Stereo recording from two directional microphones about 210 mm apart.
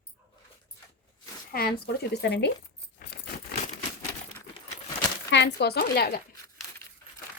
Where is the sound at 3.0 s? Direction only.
50° left (ahead or behind).